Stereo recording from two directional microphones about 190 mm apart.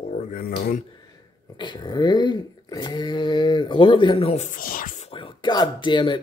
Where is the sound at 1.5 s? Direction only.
25° left (ahead or behind).